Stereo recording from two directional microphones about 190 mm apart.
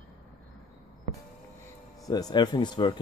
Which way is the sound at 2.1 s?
20° left (ahead or behind).